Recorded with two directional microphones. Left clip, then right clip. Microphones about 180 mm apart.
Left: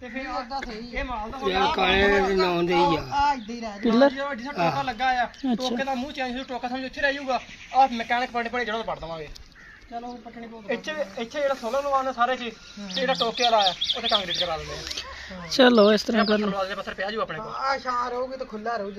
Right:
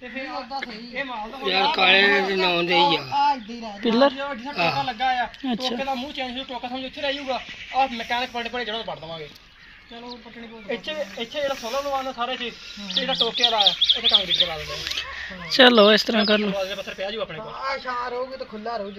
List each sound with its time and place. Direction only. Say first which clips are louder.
0.3 s speech: left 3 dB; 15° left (ahead or behind)
0.9 s a man's voice: right 1 dB; 5° left (ahead or behind)
1.7 s speech: right 5 dB; 40° left (ahead or behind)
3.1 s speech: right 2 dB; 15° left (ahead or behind)
10.7 s speech: even; 10° left (ahead or behind)
12.8 s speech: right 2 dB; 25° left (ahead or behind)
14.7 s a man's voice: right 5 dB; 15° left (ahead or behind)
16.5 s speech: right 1 dB; 20° left (ahead or behind)
17.4 s a man's voice: left 2 dB; centre (ahead or behind)